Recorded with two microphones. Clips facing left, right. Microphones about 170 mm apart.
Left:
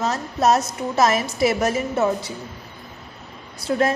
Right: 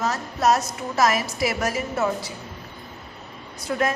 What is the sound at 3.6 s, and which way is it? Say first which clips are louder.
Speech: left 4 dB; 30° left (ahead or behind).